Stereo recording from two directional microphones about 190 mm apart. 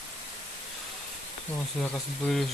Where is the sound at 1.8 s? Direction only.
Centre (ahead or behind).